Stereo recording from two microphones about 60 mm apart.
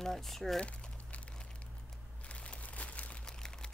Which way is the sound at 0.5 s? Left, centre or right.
Left.